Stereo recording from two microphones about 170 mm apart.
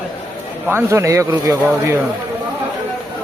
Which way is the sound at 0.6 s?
15° right (ahead or behind).